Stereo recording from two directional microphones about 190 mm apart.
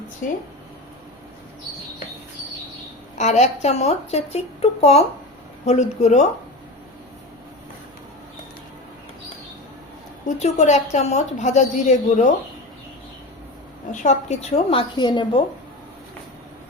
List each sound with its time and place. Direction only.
3.2 s a woman's voice: 35° left (ahead or behind)
10.2 s a woman's voice: 35° left (ahead or behind)
13.9 s a woman's voice: 40° left (ahead or behind)